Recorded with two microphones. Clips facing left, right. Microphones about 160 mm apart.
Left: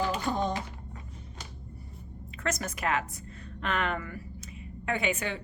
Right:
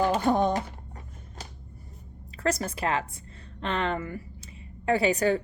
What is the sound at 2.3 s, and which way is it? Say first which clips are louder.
A woman's voice: right 5 dB; 35° right (ahead or behind).